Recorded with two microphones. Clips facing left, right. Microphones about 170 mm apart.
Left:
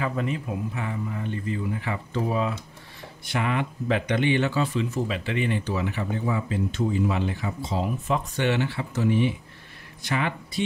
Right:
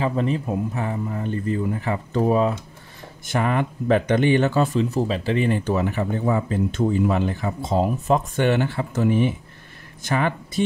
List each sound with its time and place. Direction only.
0.0 s speech: 30° right (ahead or behind)